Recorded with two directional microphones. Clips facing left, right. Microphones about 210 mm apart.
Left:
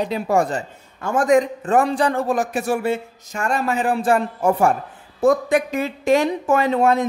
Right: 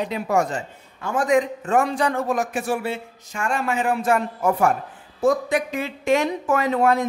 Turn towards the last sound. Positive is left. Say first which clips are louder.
# left 2 dB
turn(degrees=25)  # may be behind; listen again after turning